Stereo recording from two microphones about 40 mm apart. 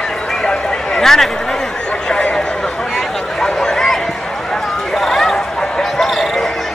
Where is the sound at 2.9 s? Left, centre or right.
Centre.